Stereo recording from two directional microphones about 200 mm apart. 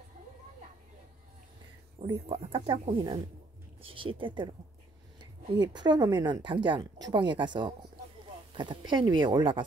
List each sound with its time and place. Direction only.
2.0 s speech: 25° right (ahead or behind)